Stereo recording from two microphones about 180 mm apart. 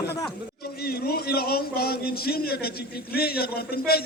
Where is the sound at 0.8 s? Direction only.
60° left (ahead or behind).